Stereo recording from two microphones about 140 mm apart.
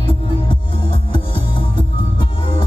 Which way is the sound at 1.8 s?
35° left (ahead or behind).